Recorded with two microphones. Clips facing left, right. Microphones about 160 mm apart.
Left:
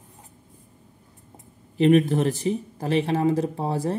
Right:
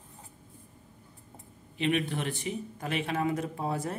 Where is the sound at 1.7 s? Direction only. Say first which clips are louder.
Left 11 dB; 40° left (ahead or behind).